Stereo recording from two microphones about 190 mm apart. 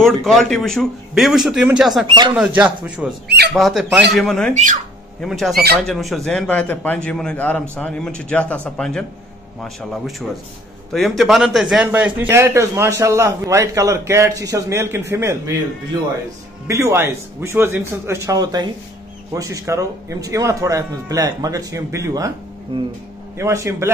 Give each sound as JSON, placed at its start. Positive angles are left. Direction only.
{"t": 0.0, "sound": "a man's voice", "side_deg": 0}
{"t": 2.0, "sound": "speech", "side_deg": -25}
{"t": 2.3, "sound": "a man's voice", "side_deg": -5}
{"t": 3.3, "sound": "speech", "side_deg": -60}
{"t": 3.5, "sound": "a man's voice", "side_deg": 0}
{"t": 4.6, "sound": "speech", "side_deg": -40}
{"t": 5.2, "sound": "a man's voice", "side_deg": 0}
{"t": 23.3, "sound": "a man's voice", "side_deg": -15}